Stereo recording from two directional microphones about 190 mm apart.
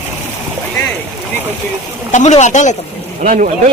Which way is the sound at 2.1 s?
40° left (ahead or behind).